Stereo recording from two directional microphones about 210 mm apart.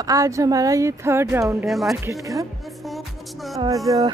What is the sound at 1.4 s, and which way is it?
Speech, centre (ahead or behind).